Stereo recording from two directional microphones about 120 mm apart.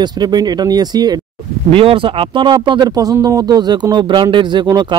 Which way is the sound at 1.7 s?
50° right (ahead or behind).